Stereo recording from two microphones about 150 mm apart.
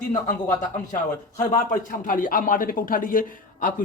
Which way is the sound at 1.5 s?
65° left (ahead or behind).